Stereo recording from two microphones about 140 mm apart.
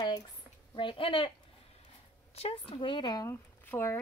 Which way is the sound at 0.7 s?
40° left (ahead or behind).